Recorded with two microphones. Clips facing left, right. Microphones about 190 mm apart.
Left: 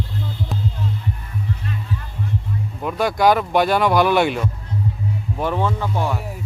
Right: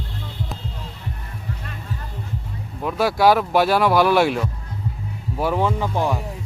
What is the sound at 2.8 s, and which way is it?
Speech, centre (ahead or behind).